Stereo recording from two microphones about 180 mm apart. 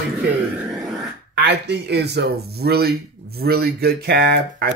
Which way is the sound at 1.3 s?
70° right (ahead or behind).